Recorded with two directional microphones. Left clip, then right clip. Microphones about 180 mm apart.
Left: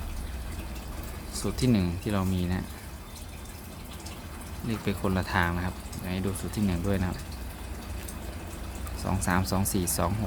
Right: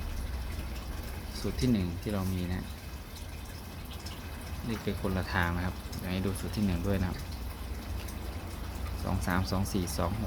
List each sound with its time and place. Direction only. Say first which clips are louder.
1.4 s speech: left 4 dB; 30° left (ahead or behind)
4.9 s speech: left 5 dB; 25° left (ahead or behind)
9.0 s speech: left 4 dB; 15° left (ahead or behind)